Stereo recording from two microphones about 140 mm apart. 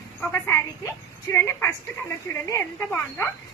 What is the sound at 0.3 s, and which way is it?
A woman's voice, 15° left (ahead or behind).